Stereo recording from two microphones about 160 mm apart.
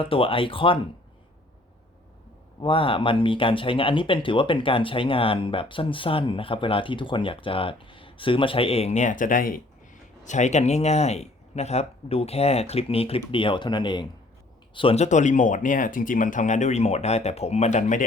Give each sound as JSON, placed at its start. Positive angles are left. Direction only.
{"t": 0.0, "sound": "speech", "side_deg": 35}
{"t": 2.6, "sound": "speech", "side_deg": 35}
{"t": 10.2, "sound": "speech", "side_deg": 50}